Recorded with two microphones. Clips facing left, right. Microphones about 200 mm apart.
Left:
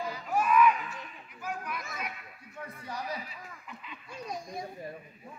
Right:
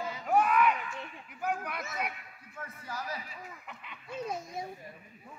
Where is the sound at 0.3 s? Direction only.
65° right (ahead or behind).